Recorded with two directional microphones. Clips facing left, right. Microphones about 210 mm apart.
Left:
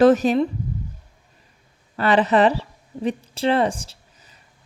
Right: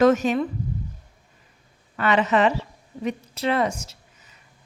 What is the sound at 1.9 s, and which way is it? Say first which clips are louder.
A woman's voice: left 3 dB; 35° left (ahead or behind).